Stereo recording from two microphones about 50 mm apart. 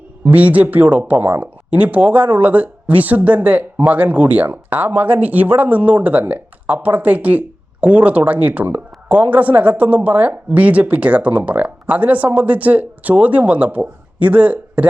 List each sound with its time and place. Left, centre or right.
0.3 s speech: right